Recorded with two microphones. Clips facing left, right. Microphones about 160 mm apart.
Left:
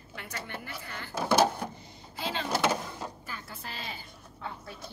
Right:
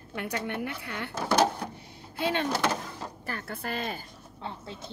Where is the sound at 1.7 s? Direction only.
65° right (ahead or behind).